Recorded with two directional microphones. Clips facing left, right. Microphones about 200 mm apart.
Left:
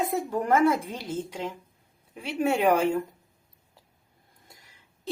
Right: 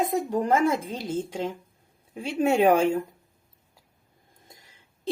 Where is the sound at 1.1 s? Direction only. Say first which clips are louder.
Right 4 dB; 50° right (ahead or behind).